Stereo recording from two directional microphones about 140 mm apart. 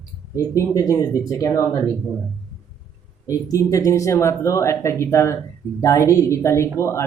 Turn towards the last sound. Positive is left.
turn(degrees=20)  # may be behind; listen again after turning